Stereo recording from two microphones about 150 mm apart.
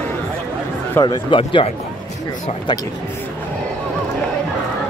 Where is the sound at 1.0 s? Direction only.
30° left (ahead or behind).